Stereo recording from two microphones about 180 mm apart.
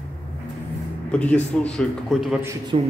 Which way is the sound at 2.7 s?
30° right (ahead or behind).